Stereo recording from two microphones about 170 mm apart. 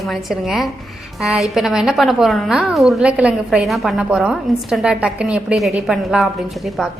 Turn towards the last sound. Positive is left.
turn(degrees=0)  # may be behind; listen again after turning